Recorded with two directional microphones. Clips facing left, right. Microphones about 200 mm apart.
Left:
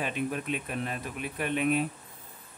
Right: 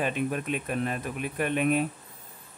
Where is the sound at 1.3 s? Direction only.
45° right (ahead or behind).